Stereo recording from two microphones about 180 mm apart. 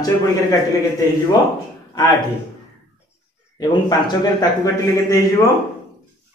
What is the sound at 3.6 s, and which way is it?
Speech, 20° left (ahead or behind).